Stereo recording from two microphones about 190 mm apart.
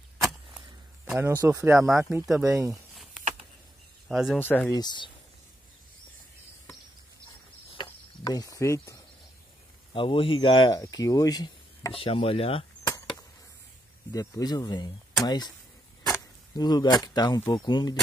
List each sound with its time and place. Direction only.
0.2 s a sound: centre (ahead or behind)
2.0 s speech: 15° right (ahead or behind)
2.7 s a sound: centre (ahead or behind)
4.1 s speech: centre (ahead or behind)
4.4 s speech: 10° left (ahead or behind)
4.7 s speech: 25° left (ahead or behind)
7.7 s a sound: 20° left (ahead or behind)
9.9 s speech: 25° left (ahead or behind)
14.1 s speech: 20° left (ahead or behind)